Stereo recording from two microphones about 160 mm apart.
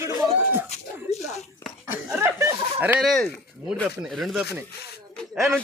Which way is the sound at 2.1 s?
15° right (ahead or behind).